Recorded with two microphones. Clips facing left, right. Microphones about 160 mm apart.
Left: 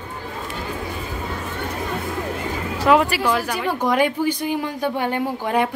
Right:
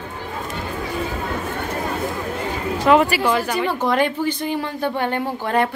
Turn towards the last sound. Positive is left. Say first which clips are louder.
# even
turn(degrees=10)  # may be behind; listen again after turning